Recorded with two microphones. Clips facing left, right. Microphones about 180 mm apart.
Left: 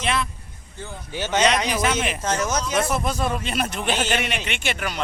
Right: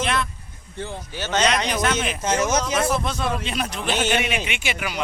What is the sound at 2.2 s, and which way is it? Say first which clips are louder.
Speech: right 6 dB; 25° right (ahead or behind).